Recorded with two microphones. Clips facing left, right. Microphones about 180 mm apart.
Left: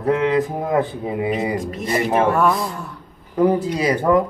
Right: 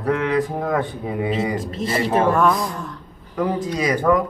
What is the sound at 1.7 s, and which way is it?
Speech, 30° right (ahead or behind).